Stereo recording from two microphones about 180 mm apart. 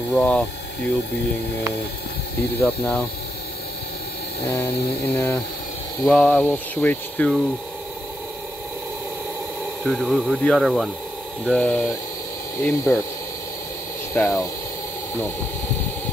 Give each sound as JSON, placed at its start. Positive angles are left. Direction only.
{"t": 0.1, "sound": "speech", "side_deg": 10}
{"t": 2.6, "sound": "speech", "side_deg": 5}
{"t": 4.5, "sound": "speech", "side_deg": 10}
{"t": 9.8, "sound": "speech", "side_deg": 0}
{"t": 14.1, "sound": "speech", "side_deg": 15}